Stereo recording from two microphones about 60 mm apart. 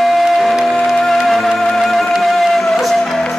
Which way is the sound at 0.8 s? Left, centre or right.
Centre.